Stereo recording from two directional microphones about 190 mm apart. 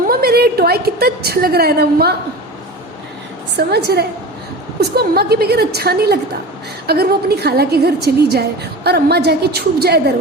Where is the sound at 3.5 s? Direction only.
60° right (ahead or behind).